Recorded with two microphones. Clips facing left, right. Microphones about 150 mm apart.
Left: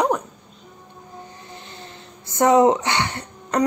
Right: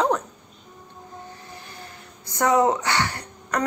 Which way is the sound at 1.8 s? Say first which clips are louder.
Left 2 dB; 20° left (ahead or behind).